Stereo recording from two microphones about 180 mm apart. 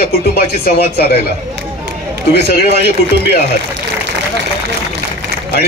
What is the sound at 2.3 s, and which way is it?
Speech, 60° left (ahead or behind).